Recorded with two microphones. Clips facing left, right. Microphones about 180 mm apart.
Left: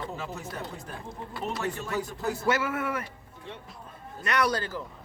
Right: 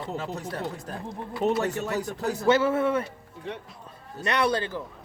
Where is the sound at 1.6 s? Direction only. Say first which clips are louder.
Right 3 dB; 40° right (ahead or behind).